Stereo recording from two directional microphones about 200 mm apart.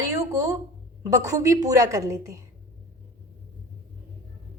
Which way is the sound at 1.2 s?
15° right (ahead or behind).